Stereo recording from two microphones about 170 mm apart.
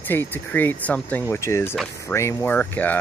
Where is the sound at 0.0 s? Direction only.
10° left (ahead or behind).